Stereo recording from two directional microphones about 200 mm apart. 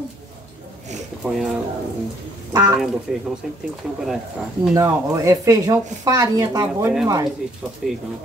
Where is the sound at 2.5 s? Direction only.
15° right (ahead or behind).